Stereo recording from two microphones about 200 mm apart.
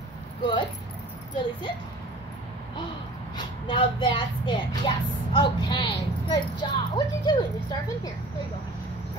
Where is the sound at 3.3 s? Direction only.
25° left (ahead or behind).